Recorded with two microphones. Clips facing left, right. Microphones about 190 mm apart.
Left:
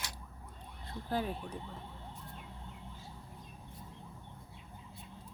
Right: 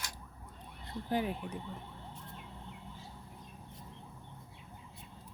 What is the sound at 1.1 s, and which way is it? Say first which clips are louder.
Speech: right 2 dB; 15° right (ahead or behind).